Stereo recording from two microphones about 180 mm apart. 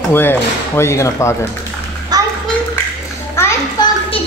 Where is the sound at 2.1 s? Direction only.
20° right (ahead or behind).